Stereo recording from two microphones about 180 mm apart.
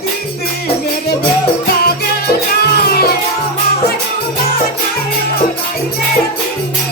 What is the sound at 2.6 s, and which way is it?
Music, 60° left (ahead or behind).